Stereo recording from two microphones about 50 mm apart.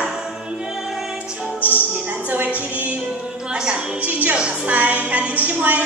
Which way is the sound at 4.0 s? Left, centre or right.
Right.